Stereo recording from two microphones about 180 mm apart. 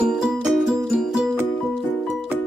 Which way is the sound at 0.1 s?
5° right (ahead or behind).